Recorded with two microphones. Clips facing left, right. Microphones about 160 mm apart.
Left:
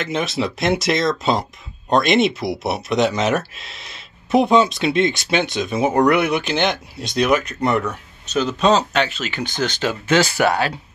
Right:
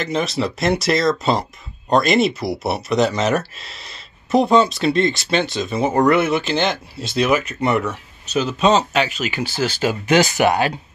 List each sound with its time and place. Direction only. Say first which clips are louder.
0.0 s speech: right 1 dB; centre (ahead or behind); by 10.7 s 15° right (ahead or behind)